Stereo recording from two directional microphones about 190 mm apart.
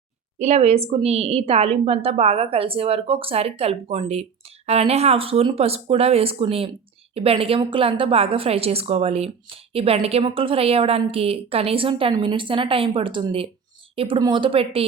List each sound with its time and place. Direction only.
0.3 s a woman's voice: 35° right (ahead or behind)